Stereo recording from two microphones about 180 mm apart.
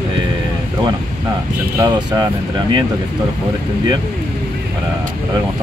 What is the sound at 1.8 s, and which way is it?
Speech, 20° right (ahead or behind).